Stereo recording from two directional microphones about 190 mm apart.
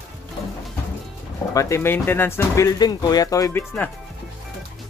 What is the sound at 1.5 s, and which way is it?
Speech, 15° left (ahead or behind).